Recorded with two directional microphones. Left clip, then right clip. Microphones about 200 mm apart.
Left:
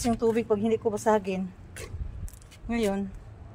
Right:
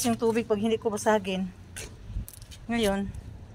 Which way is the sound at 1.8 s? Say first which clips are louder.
Even; 60° left (ahead or behind).